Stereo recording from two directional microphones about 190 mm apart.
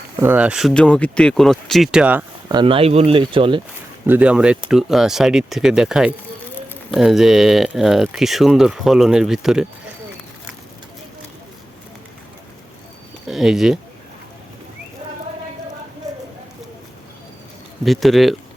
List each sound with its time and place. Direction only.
0.2 s speech: 10° right (ahead or behind)
2.5 s speech: 25° right (ahead or behind)
4.0 s speech: 10° right (ahead or behind)
13.2 s speech: centre (ahead or behind)
17.8 s speech: centre (ahead or behind)